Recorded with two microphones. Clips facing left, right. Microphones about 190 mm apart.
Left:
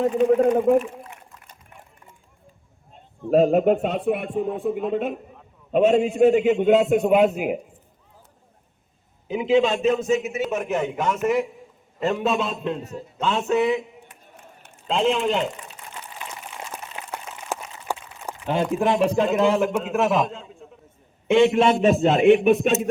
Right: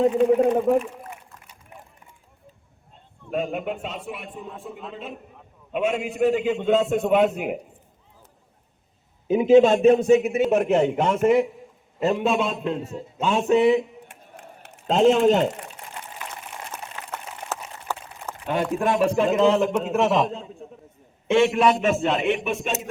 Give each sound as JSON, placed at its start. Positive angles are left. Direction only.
{"t": 0.3, "sound": "speech", "side_deg": 0}
{"t": 3.2, "sound": "speech", "side_deg": 40}
{"t": 5.7, "sound": "a man's voice", "side_deg": 35}
{"t": 9.2, "sound": "speech", "side_deg": -50}
{"t": 9.8, "sound": "speech", "side_deg": -30}
{"t": 10.2, "sound": "a man's voice", "side_deg": -55}
{"t": 10.9, "sound": "a man's voice", "side_deg": -30}
{"t": 12.0, "sound": "a man's voice", "side_deg": -10}
{"t": 12.8, "sound": "a man's voice", "side_deg": -25}
{"t": 14.8, "sound": "speech", "side_deg": -45}
{"t": 16.7, "sound": "a sound", "side_deg": 15}
{"t": 18.4, "sound": "a man's voice", "side_deg": 20}
{"t": 21.2, "sound": "a man's voice", "side_deg": 15}